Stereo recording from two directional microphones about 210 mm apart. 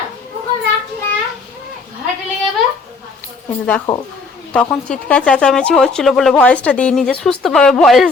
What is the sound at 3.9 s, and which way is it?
Speech, 15° left (ahead or behind).